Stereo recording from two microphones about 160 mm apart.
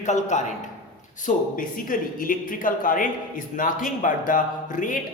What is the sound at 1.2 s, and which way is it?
Speech, 60° left (ahead or behind).